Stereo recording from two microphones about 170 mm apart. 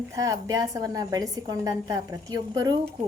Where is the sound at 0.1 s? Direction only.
20° right (ahead or behind).